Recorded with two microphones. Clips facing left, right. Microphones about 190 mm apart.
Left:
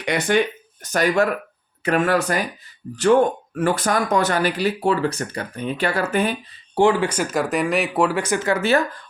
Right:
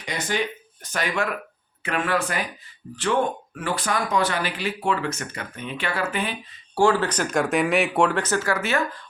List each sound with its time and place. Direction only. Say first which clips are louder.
0.0 s speech: left 8 dB; 65° left (ahead or behind)
0.8 s speech: left 8 dB; 40° left (ahead or behind)
6.7 s speech: left 3 dB; 15° left (ahead or behind)